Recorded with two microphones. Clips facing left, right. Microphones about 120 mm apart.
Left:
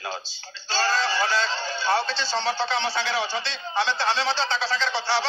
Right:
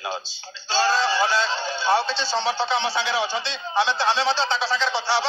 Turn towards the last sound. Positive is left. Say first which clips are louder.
# right 2 dB
turn(degrees=-15)  # may be behind; listen again after turning